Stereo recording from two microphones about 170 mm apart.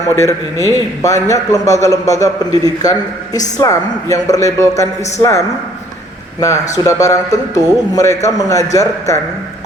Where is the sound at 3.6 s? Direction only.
20° left (ahead or behind).